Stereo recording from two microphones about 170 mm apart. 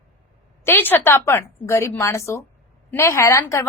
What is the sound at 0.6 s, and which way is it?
A woman's voice, 10° left (ahead or behind).